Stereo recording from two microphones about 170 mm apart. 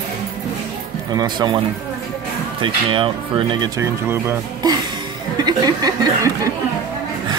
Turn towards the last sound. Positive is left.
turn(degrees=-20)  # may be behind; listen again after turning